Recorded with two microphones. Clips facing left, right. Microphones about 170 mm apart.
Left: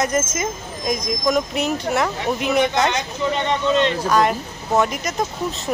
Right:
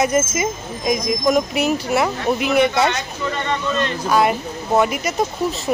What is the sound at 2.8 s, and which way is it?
Speech, 20° left (ahead or behind).